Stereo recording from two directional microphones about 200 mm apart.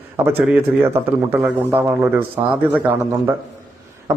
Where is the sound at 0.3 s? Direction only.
10° right (ahead or behind).